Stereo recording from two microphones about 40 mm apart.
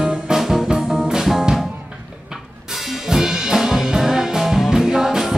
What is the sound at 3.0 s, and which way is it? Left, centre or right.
Music, centre.